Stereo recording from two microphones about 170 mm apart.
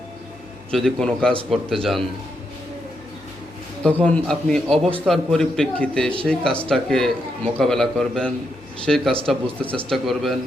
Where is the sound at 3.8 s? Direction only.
5° left (ahead or behind).